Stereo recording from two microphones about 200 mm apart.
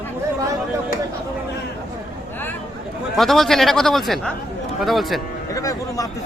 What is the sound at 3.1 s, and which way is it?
Speech, centre (ahead or behind).